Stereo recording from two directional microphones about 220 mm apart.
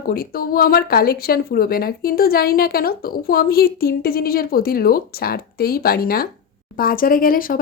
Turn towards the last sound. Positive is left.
turn(degrees=40)  # may be behind; listen again after turning